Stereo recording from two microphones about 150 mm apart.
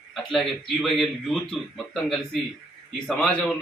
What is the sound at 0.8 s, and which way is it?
Speech, centre (ahead or behind).